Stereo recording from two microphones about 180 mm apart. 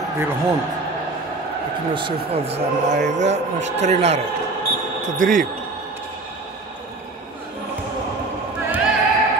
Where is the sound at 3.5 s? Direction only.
90° right.